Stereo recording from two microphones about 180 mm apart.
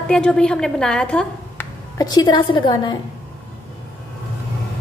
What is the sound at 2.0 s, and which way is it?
A woman's voice, 25° left (ahead or behind).